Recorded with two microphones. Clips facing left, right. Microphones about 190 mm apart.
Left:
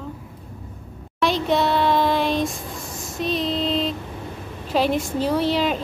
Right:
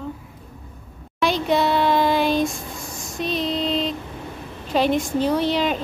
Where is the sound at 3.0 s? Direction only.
Centre (ahead or behind).